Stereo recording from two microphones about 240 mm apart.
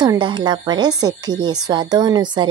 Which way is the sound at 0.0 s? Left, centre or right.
Centre.